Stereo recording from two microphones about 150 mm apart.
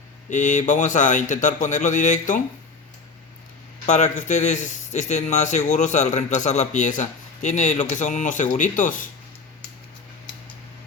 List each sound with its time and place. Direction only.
0.3 s a man's voice: 55° left (ahead or behind)
3.9 s a man's voice: 50° left (ahead or behind)